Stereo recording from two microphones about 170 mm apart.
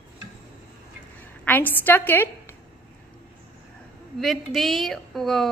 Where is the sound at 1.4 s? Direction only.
10° left (ahead or behind).